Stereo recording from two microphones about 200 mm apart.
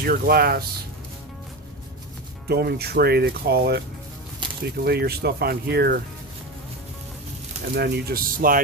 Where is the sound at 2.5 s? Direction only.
55° right (ahead or behind).